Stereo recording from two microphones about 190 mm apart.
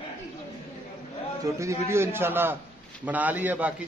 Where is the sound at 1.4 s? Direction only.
15° right (ahead or behind).